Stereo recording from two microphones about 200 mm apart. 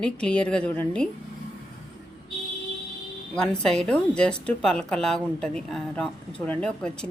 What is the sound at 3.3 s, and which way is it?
A woman's voice, 5° left (ahead or behind).